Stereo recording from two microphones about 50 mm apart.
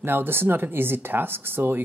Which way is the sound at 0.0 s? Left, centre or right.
Right.